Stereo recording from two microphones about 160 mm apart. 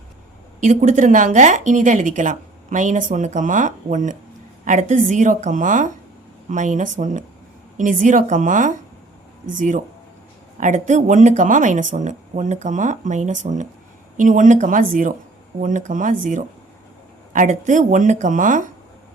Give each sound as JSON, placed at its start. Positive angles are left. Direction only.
{"t": 0.6, "sound": "a woman's voice", "side_deg": -55}